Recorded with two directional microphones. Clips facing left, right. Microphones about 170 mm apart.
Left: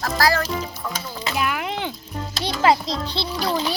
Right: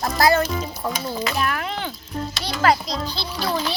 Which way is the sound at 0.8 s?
35° right (ahead or behind).